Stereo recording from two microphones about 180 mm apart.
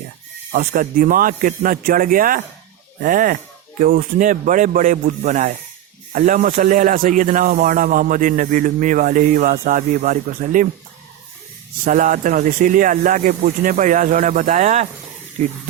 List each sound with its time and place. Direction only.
0.5 s speech: 50° right (ahead or behind)
11.9 s speech: 50° right (ahead or behind)